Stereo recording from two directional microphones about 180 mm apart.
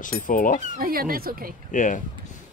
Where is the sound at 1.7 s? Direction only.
45° left (ahead or behind).